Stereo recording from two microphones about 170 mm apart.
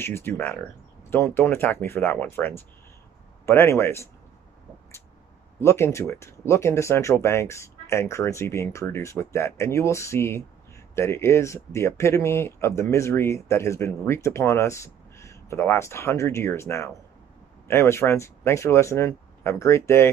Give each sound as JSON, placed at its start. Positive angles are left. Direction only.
{"t": 0.0, "sound": "speech", "side_deg": 15}
{"t": 5.6, "sound": "speech", "side_deg": 15}